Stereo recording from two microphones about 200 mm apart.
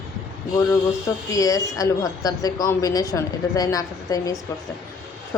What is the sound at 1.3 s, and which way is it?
A woman's voice, 15° left (ahead or behind).